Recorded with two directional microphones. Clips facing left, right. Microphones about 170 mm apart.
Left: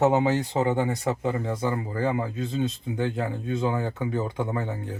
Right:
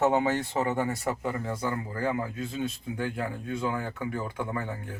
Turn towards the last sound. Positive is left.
turn(degrees=25)  # may be behind; listen again after turning